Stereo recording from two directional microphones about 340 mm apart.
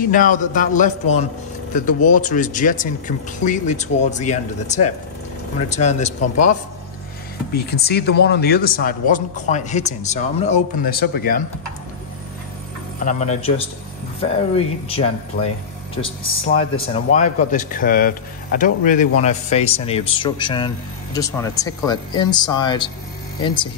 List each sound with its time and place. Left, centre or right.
0.0 s speech: left
7.5 s speech: left
13.0 s speech: centre